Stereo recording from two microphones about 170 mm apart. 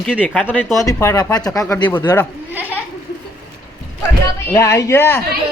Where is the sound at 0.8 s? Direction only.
20° left (ahead or behind).